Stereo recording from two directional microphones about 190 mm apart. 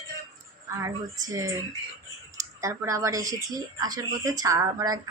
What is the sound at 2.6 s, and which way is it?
Speech, 15° right (ahead or behind).